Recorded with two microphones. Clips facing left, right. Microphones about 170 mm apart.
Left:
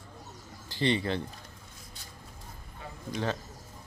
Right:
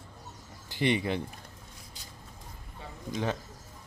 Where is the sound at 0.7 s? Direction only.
15° right (ahead or behind).